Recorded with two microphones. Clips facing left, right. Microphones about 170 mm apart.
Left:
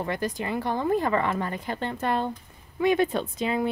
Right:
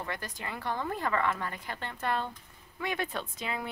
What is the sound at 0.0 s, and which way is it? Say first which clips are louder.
Speech: left 10 dB; 20° left (ahead or behind).